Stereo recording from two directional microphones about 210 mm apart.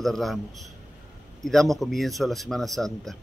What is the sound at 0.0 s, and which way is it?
A man's voice, centre (ahead or behind).